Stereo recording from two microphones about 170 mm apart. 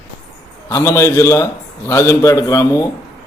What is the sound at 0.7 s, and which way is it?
A man's voice, 15° left (ahead or behind).